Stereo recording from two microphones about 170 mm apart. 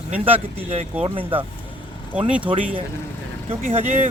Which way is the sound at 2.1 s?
5° right (ahead or behind).